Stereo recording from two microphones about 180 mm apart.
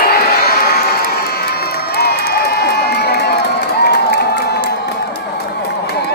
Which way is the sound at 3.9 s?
65° left (ahead or behind).